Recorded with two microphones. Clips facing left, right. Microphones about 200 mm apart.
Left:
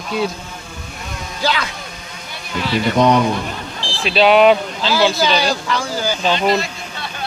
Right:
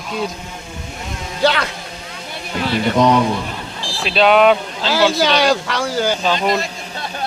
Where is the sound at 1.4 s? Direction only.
65° right (ahead or behind).